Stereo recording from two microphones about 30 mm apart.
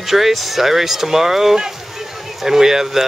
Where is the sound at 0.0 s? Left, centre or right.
Centre.